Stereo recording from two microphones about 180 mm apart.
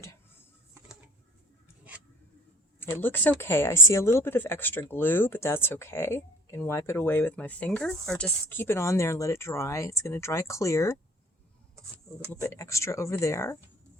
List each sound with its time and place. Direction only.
0.7 s a sound: 10° right (ahead or behind)
2.8 s speech: 10° left (ahead or behind)
12.3 s speech: 15° left (ahead or behind)